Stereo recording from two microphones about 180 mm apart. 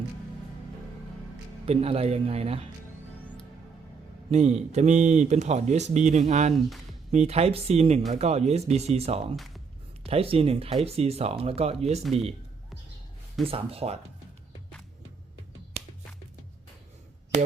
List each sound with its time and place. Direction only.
1.6 s speech: 35° right (ahead or behind)
4.3 s speech: 40° right (ahead or behind)
13.4 s speech: 30° right (ahead or behind)
15.8 s music: 35° right (ahead or behind)